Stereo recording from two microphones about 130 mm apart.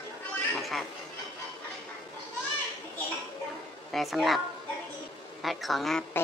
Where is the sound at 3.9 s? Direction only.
Centre (ahead or behind).